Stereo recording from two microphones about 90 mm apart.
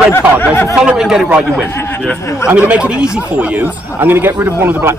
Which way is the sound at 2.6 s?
15° right (ahead or behind).